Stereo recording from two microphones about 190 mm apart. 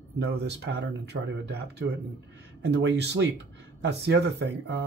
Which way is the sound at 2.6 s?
65° right (ahead or behind).